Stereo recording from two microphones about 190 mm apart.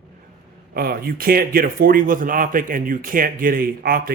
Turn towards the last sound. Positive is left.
turn(degrees=-55)  # may be behind; listen again after turning